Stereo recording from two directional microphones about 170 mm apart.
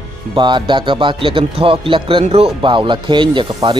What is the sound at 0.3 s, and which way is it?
Speech, 25° right (ahead or behind).